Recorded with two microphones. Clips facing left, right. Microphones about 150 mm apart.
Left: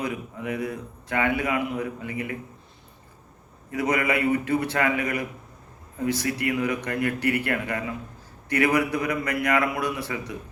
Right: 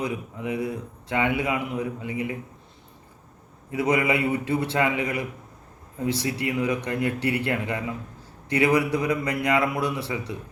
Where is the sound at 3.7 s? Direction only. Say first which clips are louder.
Right 2 dB; 25° right (ahead or behind).